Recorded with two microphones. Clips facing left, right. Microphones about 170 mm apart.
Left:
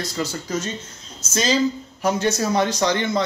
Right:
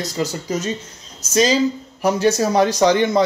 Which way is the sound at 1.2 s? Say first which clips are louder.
Right 4 dB; 40° right (ahead or behind).